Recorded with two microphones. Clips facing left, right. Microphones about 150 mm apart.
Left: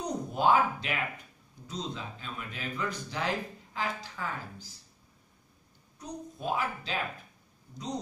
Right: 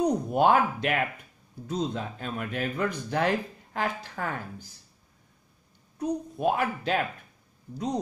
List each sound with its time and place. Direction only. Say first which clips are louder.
0.0 s speech: right 6 dB; 60° right (ahead or behind)
5.9 s speech: right 11 dB; 60° right (ahead or behind)